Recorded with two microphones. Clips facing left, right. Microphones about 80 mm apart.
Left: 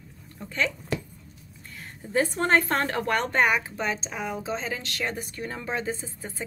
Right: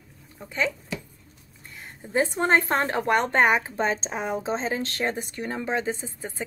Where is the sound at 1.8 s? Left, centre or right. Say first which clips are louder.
Right 1 dB; right.